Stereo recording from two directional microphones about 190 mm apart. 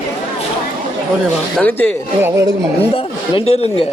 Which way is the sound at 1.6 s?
10° left (ahead or behind).